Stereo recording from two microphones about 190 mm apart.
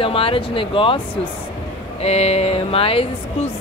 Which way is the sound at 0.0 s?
30° left (ahead or behind).